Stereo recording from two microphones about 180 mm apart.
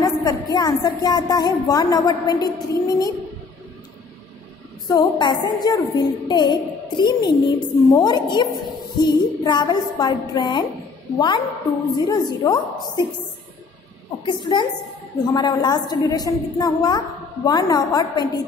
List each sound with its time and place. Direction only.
0.0 s a woman's voice: 20° left (ahead or behind)
4.8 s a woman's voice: 25° left (ahead or behind)
14.2 s a woman's voice: 25° left (ahead or behind)